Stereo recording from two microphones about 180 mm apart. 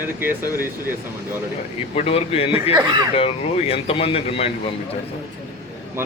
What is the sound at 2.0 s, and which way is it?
Speech, 35° left (ahead or behind).